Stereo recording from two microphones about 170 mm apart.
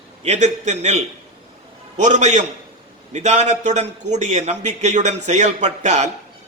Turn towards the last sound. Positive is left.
turn(degrees=-45)  # may be behind; listen again after turning